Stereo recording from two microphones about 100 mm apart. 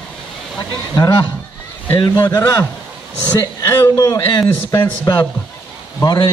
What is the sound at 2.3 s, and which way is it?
Speech, 35° left (ahead or behind).